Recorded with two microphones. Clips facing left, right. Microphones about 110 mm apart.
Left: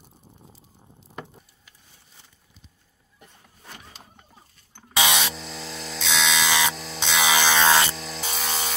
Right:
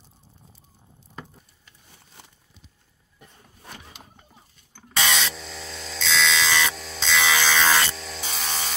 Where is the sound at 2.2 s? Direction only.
65° right (ahead or behind).